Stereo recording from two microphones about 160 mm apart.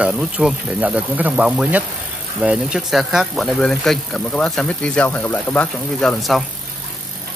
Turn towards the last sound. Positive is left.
turn(degrees=0)  # may be behind; listen again after turning